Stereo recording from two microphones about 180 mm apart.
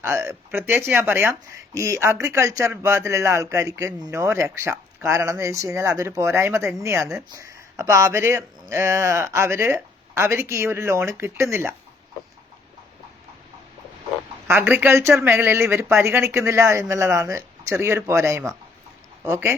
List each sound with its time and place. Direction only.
0.0 s speech: 15° right (ahead or behind)
14.4 s speech: 10° right (ahead or behind)